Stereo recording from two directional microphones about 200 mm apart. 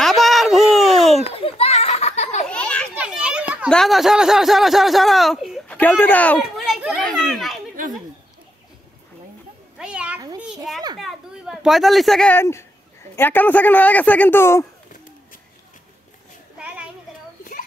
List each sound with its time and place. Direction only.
0.0 s a sound: centre (ahead or behind)
1.2 s a sound: 30° left (ahead or behind)
2.4 s children playing: 5° left (ahead or behind)
3.0 s a child's voice: 5° right (ahead or behind)
6.7 s children playing: centre (ahead or behind)
9.8 s cat: 5° right (ahead or behind)
10.4 s children playing: 5° right (ahead or behind)
11.0 s a sound: centre (ahead or behind)
13.1 s speech: 10° left (ahead or behind)
16.5 s children playing: 5° right (ahead or behind)